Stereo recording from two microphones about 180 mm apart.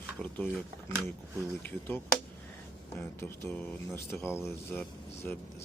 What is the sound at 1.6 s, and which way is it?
Speech, 10° left (ahead or behind).